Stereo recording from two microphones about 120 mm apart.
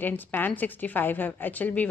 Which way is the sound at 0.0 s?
15° left (ahead or behind).